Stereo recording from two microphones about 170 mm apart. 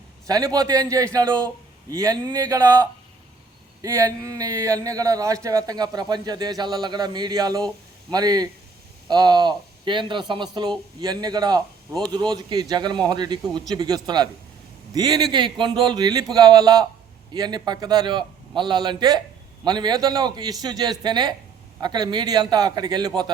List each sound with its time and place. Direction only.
0.3 s a man's voice: 20° right (ahead or behind)
3.8 s a man's voice: 20° right (ahead or behind)